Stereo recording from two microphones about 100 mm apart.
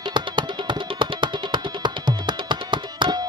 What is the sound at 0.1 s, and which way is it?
Music, 50° right (ahead or behind).